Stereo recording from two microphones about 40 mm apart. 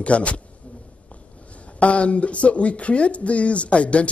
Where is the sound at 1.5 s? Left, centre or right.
Left.